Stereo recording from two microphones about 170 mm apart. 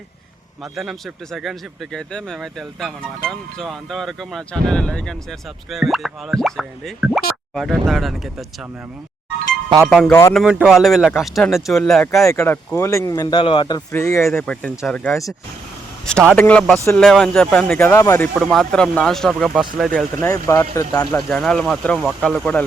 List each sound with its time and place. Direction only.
0.6 s a man's voice: centre (ahead or behind)
9.8 s a man's voice: 5° right (ahead or behind)
10.1 s speech: 15° left (ahead or behind)
10.3 s a man's voice: 5° right (ahead or behind)
12.2 s speech: 15° left (ahead or behind)
14.4 s a man's voice: 5° left (ahead or behind)
16.3 s speech: 5° left (ahead or behind)
18.4 s a man's voice: 5° left (ahead or behind)
20.2 s speech: 20° left (ahead or behind)
21.2 s a man's voice: 5° left (ahead or behind)